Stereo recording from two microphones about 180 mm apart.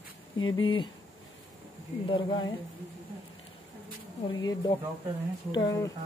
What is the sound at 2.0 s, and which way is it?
Speech, 25° left (ahead or behind).